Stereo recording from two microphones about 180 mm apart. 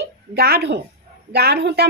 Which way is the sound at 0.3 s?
60° right (ahead or behind).